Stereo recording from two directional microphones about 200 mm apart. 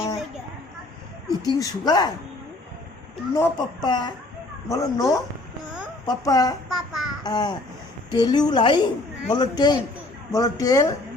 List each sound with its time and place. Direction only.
1.5 s speech: 20° left (ahead or behind)
3.3 s speech: 15° left (ahead or behind)
6.7 s a child's voice: centre (ahead or behind)
7.3 s speech: 20° left (ahead or behind)